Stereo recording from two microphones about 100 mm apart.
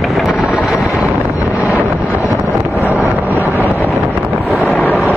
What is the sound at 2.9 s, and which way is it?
Vehicle, 15° right (ahead or behind).